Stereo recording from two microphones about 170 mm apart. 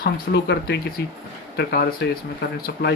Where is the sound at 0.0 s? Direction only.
75° left (ahead or behind).